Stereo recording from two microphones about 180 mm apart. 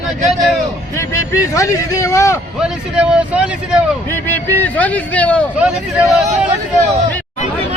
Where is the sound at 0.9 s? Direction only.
15° left (ahead or behind).